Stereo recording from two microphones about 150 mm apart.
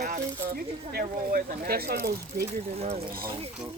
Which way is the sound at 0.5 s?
75° right (ahead or behind).